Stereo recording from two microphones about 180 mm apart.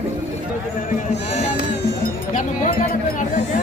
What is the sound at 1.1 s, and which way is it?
Speech, 35° left (ahead or behind).